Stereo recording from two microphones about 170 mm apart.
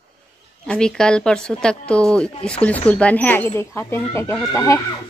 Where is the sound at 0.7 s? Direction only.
5° left (ahead or behind).